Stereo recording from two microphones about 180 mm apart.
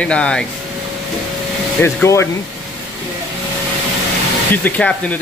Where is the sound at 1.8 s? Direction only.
15° left (ahead or behind).